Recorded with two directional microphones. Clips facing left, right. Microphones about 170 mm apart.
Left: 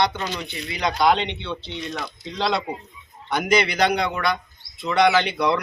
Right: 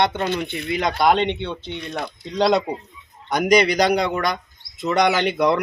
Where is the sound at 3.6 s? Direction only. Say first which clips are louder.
Right 3 dB; 35° right (ahead or behind).